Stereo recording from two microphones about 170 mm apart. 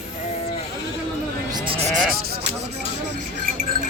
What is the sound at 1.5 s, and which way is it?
Sheep, 35° right (ahead or behind).